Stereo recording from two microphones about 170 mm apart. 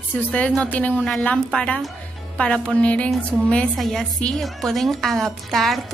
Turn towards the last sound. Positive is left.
turn(degrees=0)  # may be behind; listen again after turning